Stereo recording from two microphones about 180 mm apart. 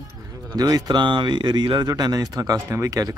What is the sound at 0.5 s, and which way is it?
Speech, 20° right (ahead or behind).